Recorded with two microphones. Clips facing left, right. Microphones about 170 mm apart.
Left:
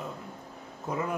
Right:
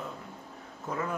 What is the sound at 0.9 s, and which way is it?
Speech, 15° left (ahead or behind).